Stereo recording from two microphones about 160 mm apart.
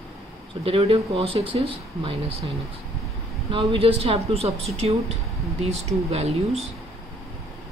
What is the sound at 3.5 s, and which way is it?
Speech, 35° right (ahead or behind).